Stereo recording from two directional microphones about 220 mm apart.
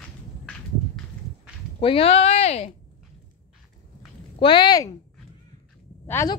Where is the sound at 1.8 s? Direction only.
25° left (ahead or behind).